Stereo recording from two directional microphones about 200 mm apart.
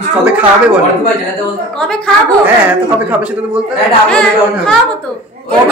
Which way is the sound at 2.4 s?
10° right (ahead or behind).